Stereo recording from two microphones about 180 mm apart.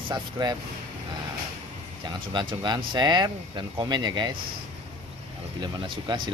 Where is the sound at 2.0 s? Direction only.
25° right (ahead or behind).